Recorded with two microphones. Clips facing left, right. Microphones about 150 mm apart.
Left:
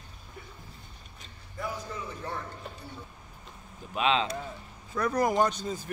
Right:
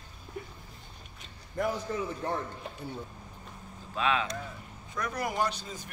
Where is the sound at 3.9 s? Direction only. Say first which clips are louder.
Left 3 dB; 20° left (ahead or behind).